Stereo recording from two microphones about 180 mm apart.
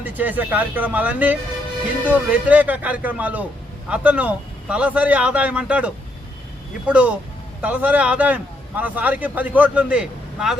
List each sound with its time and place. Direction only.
0.0 s speech: 10° right (ahead or behind)